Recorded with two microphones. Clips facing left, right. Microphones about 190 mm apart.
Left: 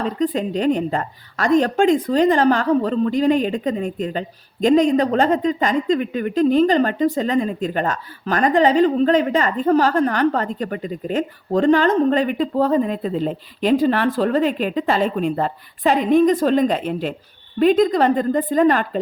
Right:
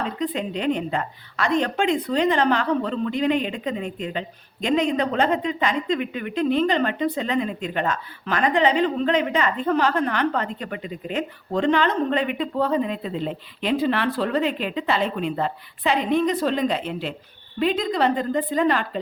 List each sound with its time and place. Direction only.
0.2 s a woman's voice: 40° left (ahead or behind)